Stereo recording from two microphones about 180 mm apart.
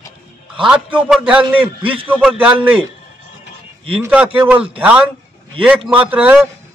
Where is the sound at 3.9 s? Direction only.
5° right (ahead or behind).